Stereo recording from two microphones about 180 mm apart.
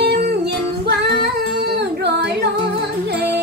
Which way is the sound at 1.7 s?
65° right (ahead or behind).